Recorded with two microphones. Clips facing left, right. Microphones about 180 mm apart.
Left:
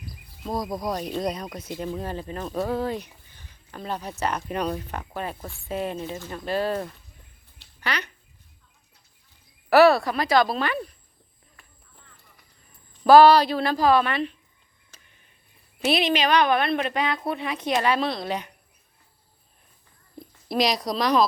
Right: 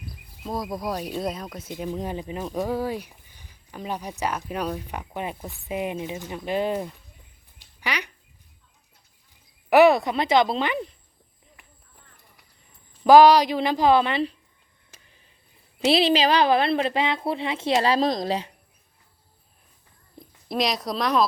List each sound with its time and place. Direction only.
0.0 s speech: 5° right (ahead or behind)
1.7 s speech: 15° right (ahead or behind)
7.6 s a sound: 10° right (ahead or behind)
9.6 s a woman's voice: 15° right (ahead or behind)
11.6 s a sound: 15° right (ahead or behind)
13.1 s speech: 15° right (ahead or behind)
15.8 s a woman's voice: 30° right (ahead or behind)
20.5 s speech: centre (ahead or behind)